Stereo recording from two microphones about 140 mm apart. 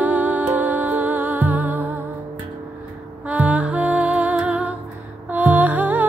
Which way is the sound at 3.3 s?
10° right (ahead or behind).